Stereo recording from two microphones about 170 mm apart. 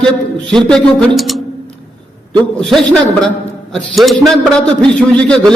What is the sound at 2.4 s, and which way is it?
A man's voice, 5° left (ahead or behind).